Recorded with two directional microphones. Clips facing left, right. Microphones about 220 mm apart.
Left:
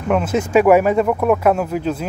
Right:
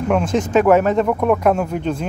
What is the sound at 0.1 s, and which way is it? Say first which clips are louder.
Speech: left 1 dB; 5° left (ahead or behind).